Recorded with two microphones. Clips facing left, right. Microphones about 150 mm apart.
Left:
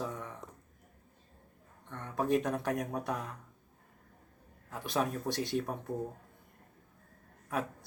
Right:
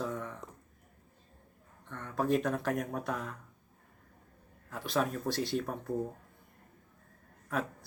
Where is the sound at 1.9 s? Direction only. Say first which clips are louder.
Even; 15° left (ahead or behind).